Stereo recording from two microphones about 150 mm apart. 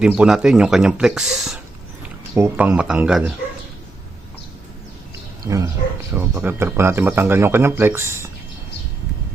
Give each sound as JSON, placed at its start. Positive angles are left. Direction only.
{"t": 0.0, "sound": "speech", "side_deg": -5}
{"t": 2.3, "sound": "speech", "side_deg": -15}
{"t": 6.1, "sound": "speech", "side_deg": -15}